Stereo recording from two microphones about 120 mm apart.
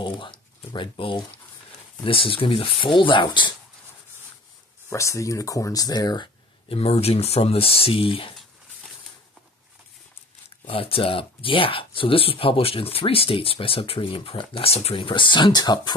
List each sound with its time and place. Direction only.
0.0 s speech: 45° left (ahead or behind)
4.8 s speech: 25° left (ahead or behind)
6.7 s speech: 55° left (ahead or behind)
10.7 s speech: 50° left (ahead or behind); by 15.9 s 35° left (ahead or behind)